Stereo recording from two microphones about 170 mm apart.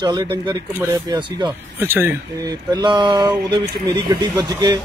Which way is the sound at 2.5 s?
25° right (ahead or behind).